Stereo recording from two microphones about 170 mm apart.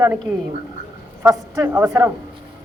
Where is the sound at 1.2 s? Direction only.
15° right (ahead or behind).